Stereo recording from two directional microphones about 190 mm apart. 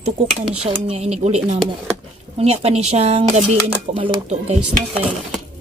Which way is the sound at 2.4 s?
30° right (ahead or behind).